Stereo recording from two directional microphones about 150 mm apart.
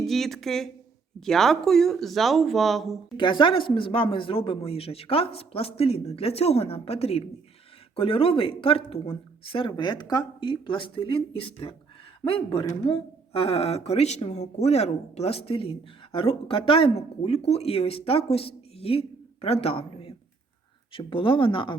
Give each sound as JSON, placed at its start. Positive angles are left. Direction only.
{"t": 0.0, "sound": "speech", "side_deg": 0}
{"t": 3.2, "sound": "speech", "side_deg": 30}